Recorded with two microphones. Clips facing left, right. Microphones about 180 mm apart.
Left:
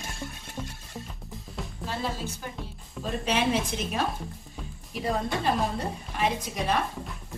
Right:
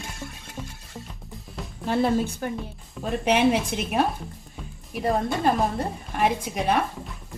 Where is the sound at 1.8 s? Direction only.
55° right (ahead or behind).